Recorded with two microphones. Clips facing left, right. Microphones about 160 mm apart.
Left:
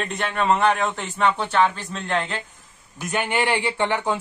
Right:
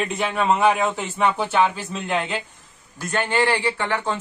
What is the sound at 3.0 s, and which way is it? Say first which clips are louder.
Speech: right 2 dB; 15° left (ahead or behind).